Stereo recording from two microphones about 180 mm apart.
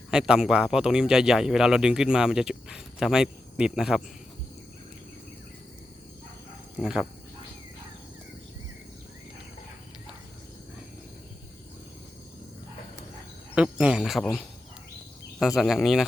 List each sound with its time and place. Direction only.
0.1 s speech: 5° right (ahead or behind)
6.7 s speech: 5° right (ahead or behind)
13.6 s speech: 5° right (ahead or behind)